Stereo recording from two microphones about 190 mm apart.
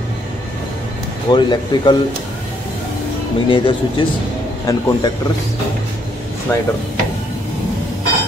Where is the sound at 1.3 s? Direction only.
25° left (ahead or behind).